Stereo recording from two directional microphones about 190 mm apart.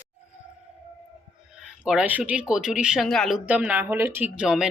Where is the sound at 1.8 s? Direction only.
5° right (ahead or behind).